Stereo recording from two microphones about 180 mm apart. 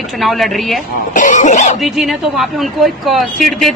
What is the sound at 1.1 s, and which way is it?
Cough, 45° left (ahead or behind).